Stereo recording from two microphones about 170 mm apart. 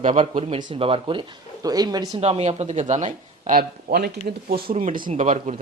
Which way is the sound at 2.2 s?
40° right (ahead or behind).